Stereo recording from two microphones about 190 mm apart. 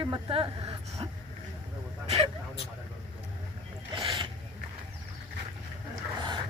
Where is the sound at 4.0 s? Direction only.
25° right (ahead or behind).